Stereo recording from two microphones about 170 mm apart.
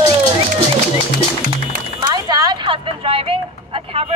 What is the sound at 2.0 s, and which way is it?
Speech, 25° right (ahead or behind).